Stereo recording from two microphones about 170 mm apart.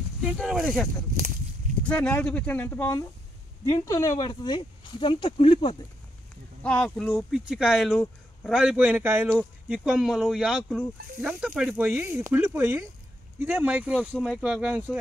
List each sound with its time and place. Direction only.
0.2 s speech: 5° right (ahead or behind)
1.9 s speech: 10° left (ahead or behind); by 5.8 s 30° left (ahead or behind)
6.6 s speech: 5° left (ahead or behind)